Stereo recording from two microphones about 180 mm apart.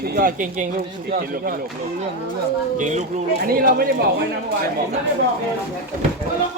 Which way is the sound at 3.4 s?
55° right (ahead or behind).